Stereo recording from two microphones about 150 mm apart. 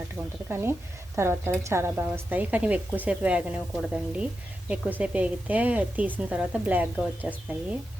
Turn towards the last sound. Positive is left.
turn(degrees=-10)  # may be behind; listen again after turning